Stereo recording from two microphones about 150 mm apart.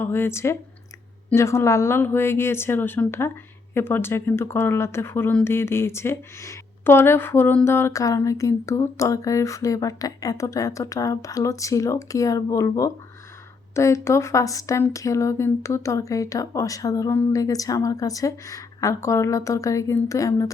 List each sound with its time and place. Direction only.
0.0 s speech: 15° left (ahead or behind)